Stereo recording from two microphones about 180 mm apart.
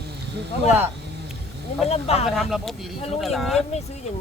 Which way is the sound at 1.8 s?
35° left (ahead or behind).